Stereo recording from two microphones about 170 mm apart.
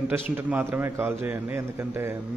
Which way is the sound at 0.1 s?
10° right (ahead or behind).